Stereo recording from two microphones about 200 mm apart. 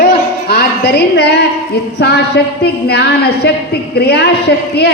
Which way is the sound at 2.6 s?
55° left (ahead or behind).